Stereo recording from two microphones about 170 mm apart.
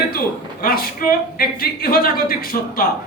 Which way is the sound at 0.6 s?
60° left (ahead or behind).